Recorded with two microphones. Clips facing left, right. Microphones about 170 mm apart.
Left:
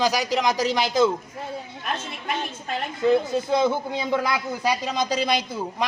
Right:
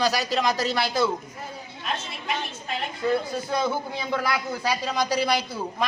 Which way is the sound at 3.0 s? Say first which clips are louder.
Left 5 dB; 20° left (ahead or behind).